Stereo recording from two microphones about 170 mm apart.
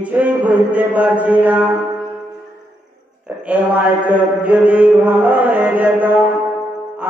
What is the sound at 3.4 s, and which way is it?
Mantra, 10° right (ahead or behind).